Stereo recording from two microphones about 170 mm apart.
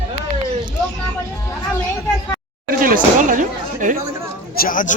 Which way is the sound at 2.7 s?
55° right (ahead or behind).